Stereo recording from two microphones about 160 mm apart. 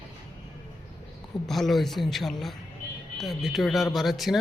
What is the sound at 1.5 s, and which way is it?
Speech, centre (ahead or behind).